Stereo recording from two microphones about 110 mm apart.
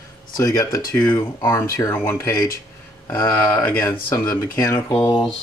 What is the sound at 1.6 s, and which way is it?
Speech, 25° left (ahead or behind).